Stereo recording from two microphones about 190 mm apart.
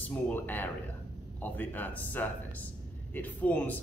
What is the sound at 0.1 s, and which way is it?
Speech, 10° left (ahead or behind).